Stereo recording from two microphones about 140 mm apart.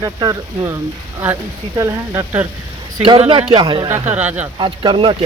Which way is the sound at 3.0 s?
40° right (ahead or behind).